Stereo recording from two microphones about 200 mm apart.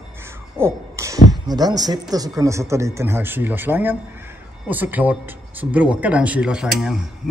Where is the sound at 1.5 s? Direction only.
20° right (ahead or behind).